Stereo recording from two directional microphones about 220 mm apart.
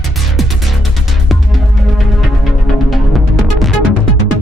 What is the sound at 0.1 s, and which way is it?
Music, centre (ahead or behind).